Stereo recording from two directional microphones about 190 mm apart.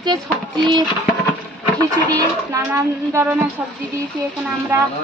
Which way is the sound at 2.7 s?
10° right (ahead or behind).